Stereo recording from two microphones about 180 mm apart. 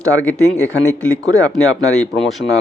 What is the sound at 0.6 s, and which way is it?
Speech, 15° right (ahead or behind).